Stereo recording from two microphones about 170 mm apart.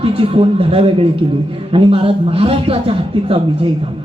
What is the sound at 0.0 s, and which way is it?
A man's voice, 30° right (ahead or behind).